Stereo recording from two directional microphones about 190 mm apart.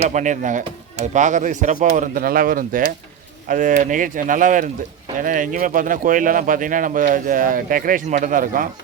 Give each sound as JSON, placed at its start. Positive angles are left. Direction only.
{"t": 0.1, "sound": "speech", "side_deg": -40}